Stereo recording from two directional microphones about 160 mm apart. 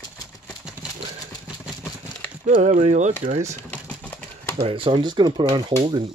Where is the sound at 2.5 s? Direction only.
50° right (ahead or behind).